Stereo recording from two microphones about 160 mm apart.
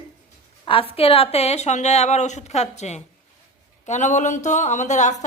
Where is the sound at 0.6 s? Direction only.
35° left (ahead or behind).